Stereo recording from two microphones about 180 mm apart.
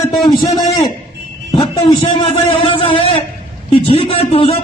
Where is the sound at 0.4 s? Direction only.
20° left (ahead or behind).